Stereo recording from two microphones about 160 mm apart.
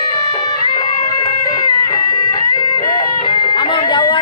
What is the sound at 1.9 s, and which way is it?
Music, 20° left (ahead or behind).